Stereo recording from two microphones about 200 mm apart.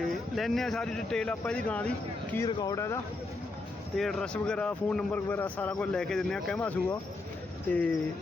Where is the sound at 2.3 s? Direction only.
20° left (ahead or behind).